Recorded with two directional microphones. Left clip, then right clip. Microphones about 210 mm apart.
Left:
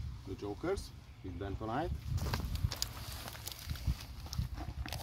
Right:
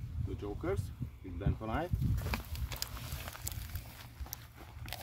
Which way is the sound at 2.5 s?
20° right (ahead or behind).